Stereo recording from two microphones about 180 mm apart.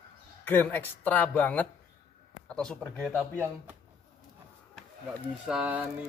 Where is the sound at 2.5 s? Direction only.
5° left (ahead or behind).